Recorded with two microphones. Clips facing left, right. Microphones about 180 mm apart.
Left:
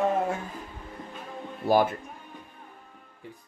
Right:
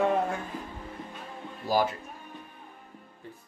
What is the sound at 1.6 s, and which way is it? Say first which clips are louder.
Speech: left 5 dB; 60° left (ahead or behind).